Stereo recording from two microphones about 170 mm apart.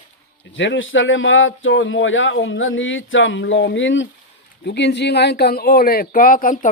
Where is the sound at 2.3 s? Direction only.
90° left.